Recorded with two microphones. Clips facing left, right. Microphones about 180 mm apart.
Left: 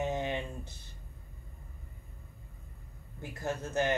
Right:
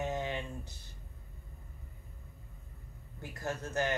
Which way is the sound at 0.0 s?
20° left (ahead or behind).